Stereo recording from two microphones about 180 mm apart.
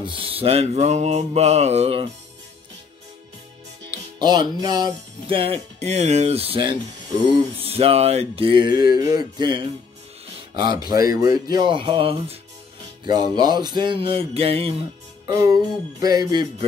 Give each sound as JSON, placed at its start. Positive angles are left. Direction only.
{"t": 0.0, "sound": "music", "side_deg": -30}
{"t": 4.2, "sound": "music", "side_deg": -25}
{"t": 10.9, "sound": "music", "side_deg": -20}
{"t": 15.2, "sound": "music", "side_deg": -20}